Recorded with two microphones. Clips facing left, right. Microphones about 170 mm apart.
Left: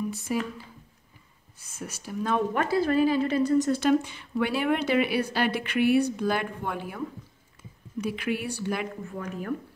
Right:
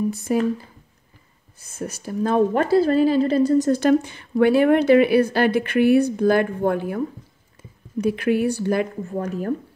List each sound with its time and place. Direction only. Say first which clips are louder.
0.1 s a woman's voice: right 8 dB; 45° right (ahead or behind)
1.7 s a woman's voice: right 7 dB; 40° right (ahead or behind)